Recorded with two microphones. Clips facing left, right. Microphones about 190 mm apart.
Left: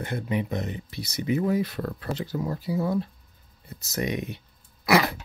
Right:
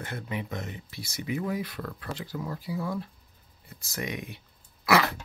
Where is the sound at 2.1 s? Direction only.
25° left (ahead or behind).